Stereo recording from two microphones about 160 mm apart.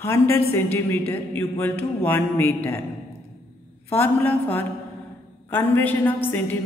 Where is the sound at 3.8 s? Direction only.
15° left (ahead or behind).